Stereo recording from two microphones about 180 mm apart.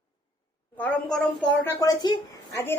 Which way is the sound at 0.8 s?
5° left (ahead or behind).